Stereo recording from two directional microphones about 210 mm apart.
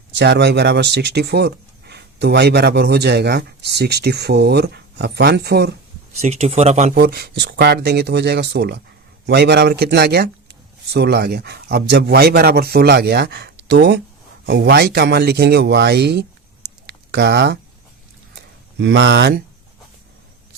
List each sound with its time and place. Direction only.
0.1 s speech: 55° right (ahead or behind)
6.1 s speech: 30° right (ahead or behind)
6.9 s speech: 50° right (ahead or behind)
16.8 s a sound: 50° right (ahead or behind)